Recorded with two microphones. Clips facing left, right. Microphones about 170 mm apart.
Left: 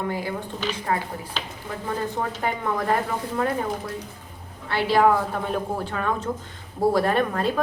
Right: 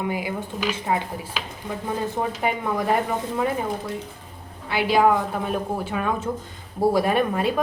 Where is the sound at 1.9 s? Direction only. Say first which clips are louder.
Right 1 dB; 10° right (ahead or behind).